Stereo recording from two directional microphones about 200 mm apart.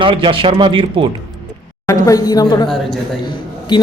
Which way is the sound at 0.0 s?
25° right (ahead or behind).